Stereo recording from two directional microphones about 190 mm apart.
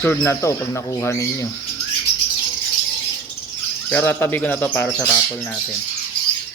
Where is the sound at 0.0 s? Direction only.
10° left (ahead or behind).